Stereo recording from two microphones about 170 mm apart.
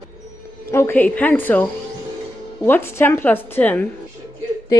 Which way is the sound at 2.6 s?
15° left (ahead or behind).